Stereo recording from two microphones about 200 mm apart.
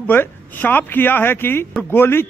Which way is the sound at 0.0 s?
10° left (ahead or behind).